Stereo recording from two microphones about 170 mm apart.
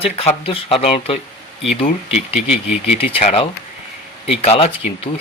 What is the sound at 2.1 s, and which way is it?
Speech, 5° right (ahead or behind).